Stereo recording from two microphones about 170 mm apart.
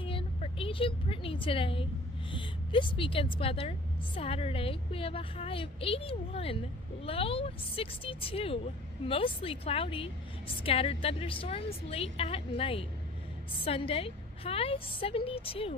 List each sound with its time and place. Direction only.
0.0 s a woman's voice: 30° left (ahead or behind)